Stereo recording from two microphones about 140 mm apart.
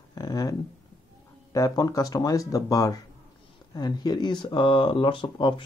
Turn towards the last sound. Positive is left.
turn(degrees=35)  # may be behind; listen again after turning